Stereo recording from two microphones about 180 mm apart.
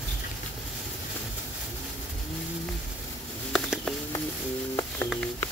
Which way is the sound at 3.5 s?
Centre (ahead or behind).